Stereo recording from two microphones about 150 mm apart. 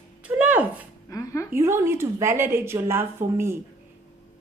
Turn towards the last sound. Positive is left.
turn(degrees=-15)  # may be behind; listen again after turning